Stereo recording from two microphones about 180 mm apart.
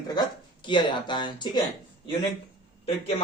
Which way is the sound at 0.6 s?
25° left (ahead or behind).